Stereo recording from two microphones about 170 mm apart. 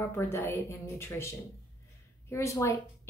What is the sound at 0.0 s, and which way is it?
Speech, 15° left (ahead or behind).